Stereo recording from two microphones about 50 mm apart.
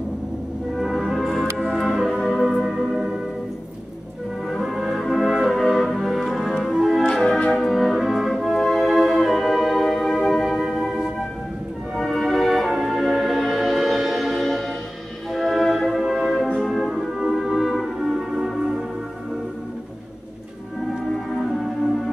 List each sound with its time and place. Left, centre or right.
0.7 s music: centre
4.5 s music: centre
7.2 s music: centre
21.1 s music: centre